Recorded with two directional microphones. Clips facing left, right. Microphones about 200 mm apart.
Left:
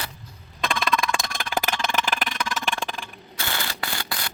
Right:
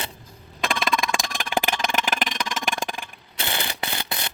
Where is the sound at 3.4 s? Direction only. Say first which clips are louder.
Right 2 dB; 20° right (ahead or behind).